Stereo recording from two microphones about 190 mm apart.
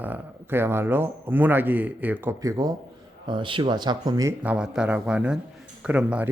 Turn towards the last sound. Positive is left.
turn(degrees=-5)  # may be behind; listen again after turning